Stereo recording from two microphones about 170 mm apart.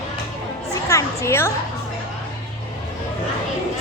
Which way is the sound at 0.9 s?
15° left (ahead or behind).